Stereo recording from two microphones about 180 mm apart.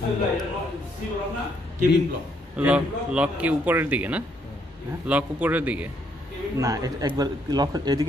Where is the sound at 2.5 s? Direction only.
5° right (ahead or behind).